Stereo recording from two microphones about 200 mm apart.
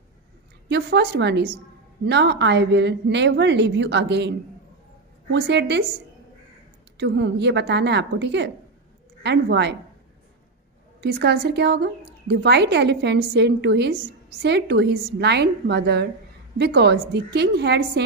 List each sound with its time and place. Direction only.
0.7 s speech: 60° right (ahead or behind)
7.0 s speech: 60° right (ahead or behind)
11.0 s speech: 55° right (ahead or behind)